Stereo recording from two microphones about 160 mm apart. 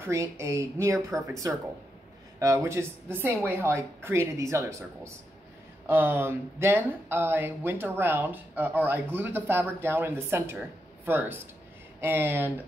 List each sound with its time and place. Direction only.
0.0 s speech: 15° right (ahead or behind)
2.3 s speech: 20° right (ahead or behind)